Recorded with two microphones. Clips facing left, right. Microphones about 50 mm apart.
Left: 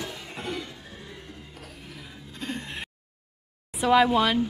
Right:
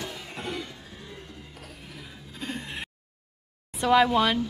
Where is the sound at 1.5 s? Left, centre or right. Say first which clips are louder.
Left 1 dB; centre.